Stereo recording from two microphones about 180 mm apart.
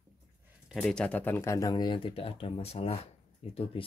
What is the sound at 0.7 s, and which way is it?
Speech, centre (ahead or behind).